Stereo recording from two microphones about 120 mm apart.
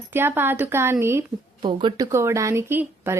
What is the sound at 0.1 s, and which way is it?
Speech, 20° right (ahead or behind).